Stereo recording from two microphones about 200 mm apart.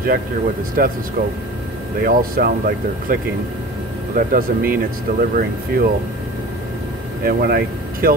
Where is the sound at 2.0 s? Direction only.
45° right (ahead or behind).